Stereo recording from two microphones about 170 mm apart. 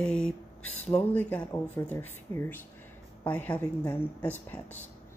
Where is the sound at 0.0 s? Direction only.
5° left (ahead or behind).